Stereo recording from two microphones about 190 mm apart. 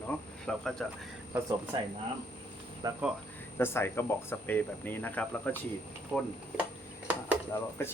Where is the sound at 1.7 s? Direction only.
25° right (ahead or behind).